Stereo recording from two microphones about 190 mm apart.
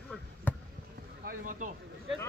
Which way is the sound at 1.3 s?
45° right (ahead or behind).